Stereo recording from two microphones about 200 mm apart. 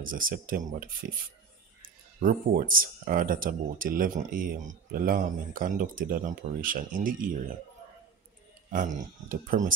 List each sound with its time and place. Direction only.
0.0 s speech: 45° right (ahead or behind)
2.2 s speech: 40° right (ahead or behind)
8.6 s speech: 40° right (ahead or behind)